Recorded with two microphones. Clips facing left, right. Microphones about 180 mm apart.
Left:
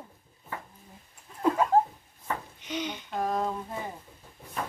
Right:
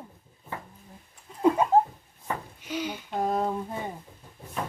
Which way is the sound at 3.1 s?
20° right (ahead or behind).